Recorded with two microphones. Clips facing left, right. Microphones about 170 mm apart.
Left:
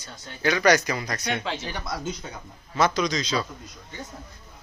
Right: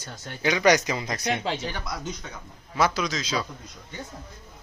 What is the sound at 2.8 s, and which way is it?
Speech, 5° right (ahead or behind).